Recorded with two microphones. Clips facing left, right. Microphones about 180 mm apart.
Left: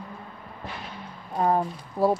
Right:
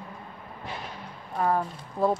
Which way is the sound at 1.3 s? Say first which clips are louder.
Left 2 dB; 25° left (ahead or behind).